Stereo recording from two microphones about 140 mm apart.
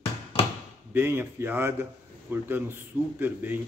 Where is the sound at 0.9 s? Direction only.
15° right (ahead or behind).